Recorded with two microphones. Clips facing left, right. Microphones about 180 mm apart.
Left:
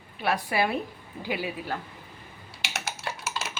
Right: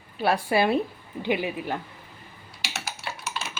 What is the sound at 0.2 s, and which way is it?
A woman's voice, 30° right (ahead or behind).